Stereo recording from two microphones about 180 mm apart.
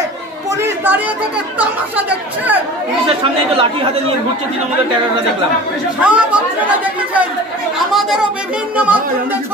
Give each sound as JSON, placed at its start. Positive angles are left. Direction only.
{"t": 0.5, "sound": "chatter", "side_deg": -15}
{"t": 1.6, "sound": "speech", "side_deg": -10}
{"t": 3.1, "sound": "speech", "side_deg": -30}
{"t": 6.0, "sound": "speech", "side_deg": -5}